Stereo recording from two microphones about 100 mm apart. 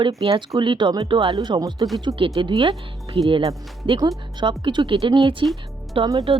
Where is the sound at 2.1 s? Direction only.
60° right (ahead or behind).